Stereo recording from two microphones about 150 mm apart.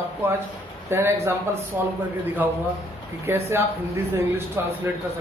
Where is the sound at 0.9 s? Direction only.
15° right (ahead or behind).